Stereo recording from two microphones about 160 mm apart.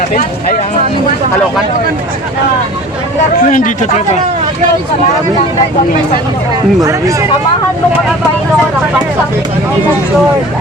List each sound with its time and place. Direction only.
3.4 s speech: 55° left (ahead or behind)